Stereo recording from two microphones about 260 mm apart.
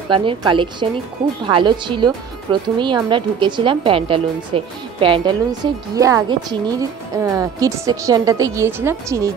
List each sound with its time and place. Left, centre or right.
0.1 s a woman's voice: centre